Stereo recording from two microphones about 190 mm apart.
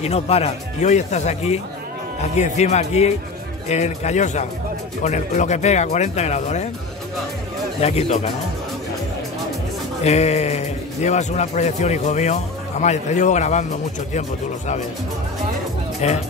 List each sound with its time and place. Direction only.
0.0 s a man's voice: 35° left (ahead or behind)
7.8 s a man's voice: 35° left (ahead or behind)
10.0 s a man's voice: 35° left (ahead or behind)
16.0 s a man's voice: 35° left (ahead or behind)